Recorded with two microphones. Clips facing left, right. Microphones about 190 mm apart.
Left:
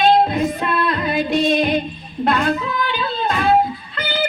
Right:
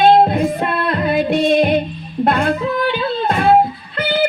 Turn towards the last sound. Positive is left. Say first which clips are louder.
# right 5 dB
turn(degrees=-60)  # may be behind; listen again after turning